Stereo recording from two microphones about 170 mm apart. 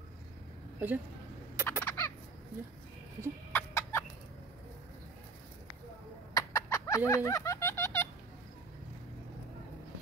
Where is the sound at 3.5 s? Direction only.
15° left (ahead or behind).